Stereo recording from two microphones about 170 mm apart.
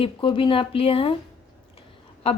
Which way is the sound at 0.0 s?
30° left (ahead or behind).